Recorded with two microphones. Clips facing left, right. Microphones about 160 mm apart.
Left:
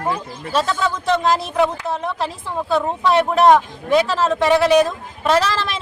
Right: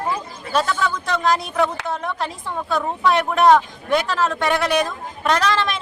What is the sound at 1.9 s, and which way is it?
Speech, centre (ahead or behind).